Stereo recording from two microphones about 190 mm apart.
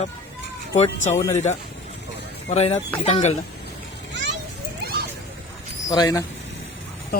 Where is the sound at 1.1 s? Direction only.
15° left (ahead or behind).